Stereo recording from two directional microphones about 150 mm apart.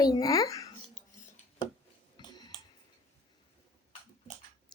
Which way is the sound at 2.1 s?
30° left (ahead or behind).